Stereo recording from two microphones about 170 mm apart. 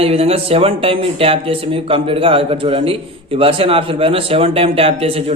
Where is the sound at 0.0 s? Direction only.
35° right (ahead or behind).